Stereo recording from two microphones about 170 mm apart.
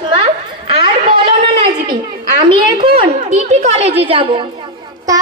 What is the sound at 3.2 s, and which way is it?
A child's voice, 40° right (ahead or behind).